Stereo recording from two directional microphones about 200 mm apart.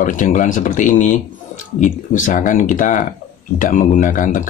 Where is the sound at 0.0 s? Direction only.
40° left (ahead or behind).